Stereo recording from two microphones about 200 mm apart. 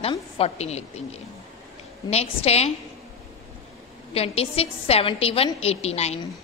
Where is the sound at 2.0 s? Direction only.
30° left (ahead or behind).